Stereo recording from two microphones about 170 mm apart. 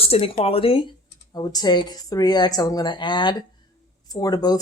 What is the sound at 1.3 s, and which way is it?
Speech, 20° left (ahead or behind).